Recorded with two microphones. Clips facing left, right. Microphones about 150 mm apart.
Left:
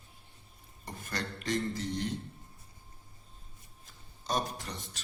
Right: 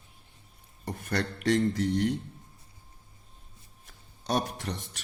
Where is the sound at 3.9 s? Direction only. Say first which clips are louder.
Right 5 dB; 65° right (ahead or behind).